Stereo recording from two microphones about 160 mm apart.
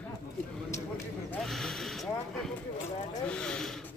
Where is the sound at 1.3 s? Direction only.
5° left (ahead or behind).